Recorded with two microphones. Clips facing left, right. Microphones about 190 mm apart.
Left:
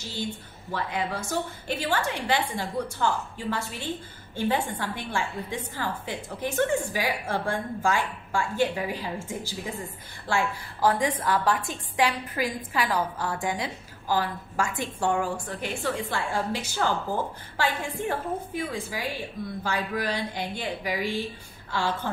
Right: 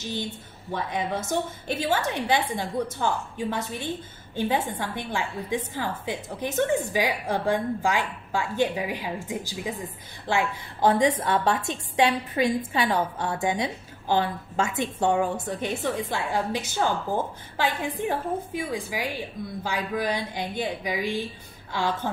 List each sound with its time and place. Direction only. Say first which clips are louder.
0.7 s a woman's voice: right 1 dB; 20° right (ahead or behind)